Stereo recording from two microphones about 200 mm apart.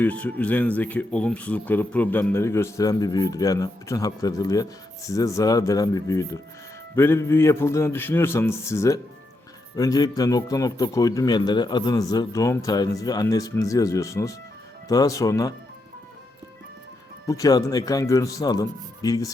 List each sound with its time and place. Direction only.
0.0 s speech: 10° left (ahead or behind)
17.2 s speech: 15° left (ahead or behind)